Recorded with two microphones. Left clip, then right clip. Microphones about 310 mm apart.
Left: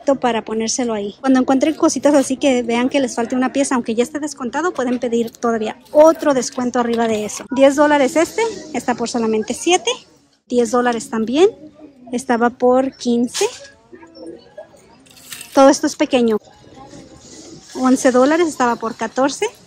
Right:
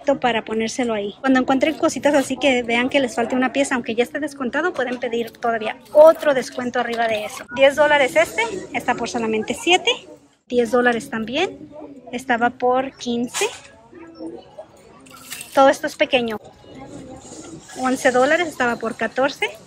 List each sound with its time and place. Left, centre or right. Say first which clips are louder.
0.0 s a woman's voice: left 2 dB; centre
15.5 s a woman's voice: left 3 dB; centre
17.8 s a woman's voice: left 3 dB; centre